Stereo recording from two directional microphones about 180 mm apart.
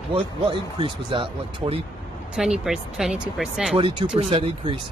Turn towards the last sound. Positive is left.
turn(degrees=-30)  # may be behind; listen again after turning